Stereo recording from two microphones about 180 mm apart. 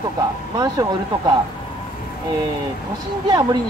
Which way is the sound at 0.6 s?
20° right (ahead or behind).